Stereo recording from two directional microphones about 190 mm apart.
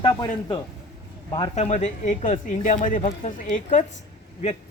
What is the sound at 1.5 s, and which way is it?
Speech, 35° left (ahead or behind).